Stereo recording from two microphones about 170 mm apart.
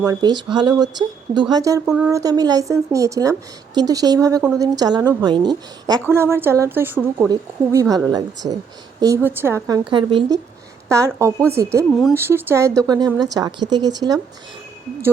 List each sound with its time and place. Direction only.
0.0 s a woman's voice: 25° right (ahead or behind)
1.9 s speech: 5° right (ahead or behind)
2.1 s a woman's voice: 20° right (ahead or behind)
9.9 s a woman's voice: 30° right (ahead or behind)